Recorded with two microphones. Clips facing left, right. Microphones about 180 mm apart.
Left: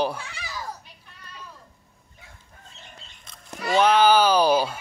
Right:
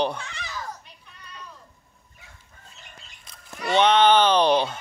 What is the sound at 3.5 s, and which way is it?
Speech, 5° left (ahead or behind).